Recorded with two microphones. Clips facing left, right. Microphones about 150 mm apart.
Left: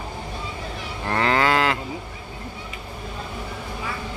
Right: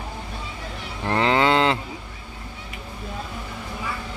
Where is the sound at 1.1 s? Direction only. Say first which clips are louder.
Right 1 dB; 20° right (ahead or behind).